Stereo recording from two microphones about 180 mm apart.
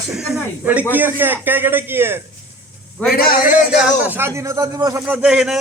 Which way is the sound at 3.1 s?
60° left (ahead or behind).